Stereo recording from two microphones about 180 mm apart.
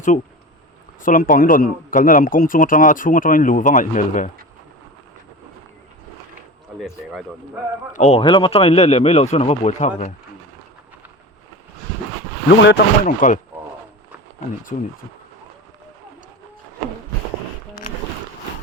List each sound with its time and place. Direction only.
1.0 s a man's voice: 50° left (ahead or behind)
6.7 s speech: centre (ahead or behind)
7.9 s a man's voice: 40° left (ahead or behind)
8.2 s a man's voice: 25° left (ahead or behind)
12.5 s speech: 70° left (ahead or behind)
13.1 s a man's voice: 45° left (ahead or behind)
14.7 s a man's voice: 45° left (ahead or behind)